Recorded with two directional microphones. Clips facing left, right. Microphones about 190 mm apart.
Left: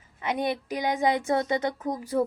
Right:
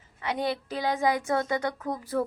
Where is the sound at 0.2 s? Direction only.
20° left (ahead or behind).